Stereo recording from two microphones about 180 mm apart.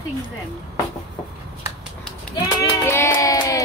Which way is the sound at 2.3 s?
15° left (ahead or behind).